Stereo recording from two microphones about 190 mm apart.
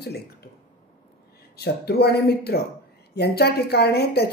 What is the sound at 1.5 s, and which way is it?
Speech, 55° left (ahead or behind).